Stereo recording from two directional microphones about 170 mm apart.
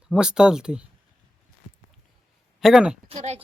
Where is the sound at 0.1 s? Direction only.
5° right (ahead or behind).